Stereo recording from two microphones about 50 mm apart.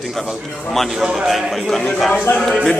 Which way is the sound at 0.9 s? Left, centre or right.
Centre.